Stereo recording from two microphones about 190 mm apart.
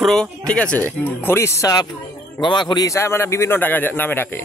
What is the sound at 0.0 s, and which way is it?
Speech, centre (ahead or behind).